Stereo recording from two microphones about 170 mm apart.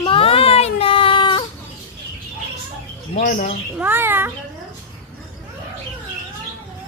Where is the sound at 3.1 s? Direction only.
50° left (ahead or behind).